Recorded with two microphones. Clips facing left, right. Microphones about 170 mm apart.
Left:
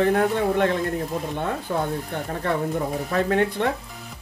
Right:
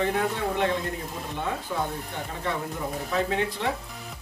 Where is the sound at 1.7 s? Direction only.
50° left (ahead or behind).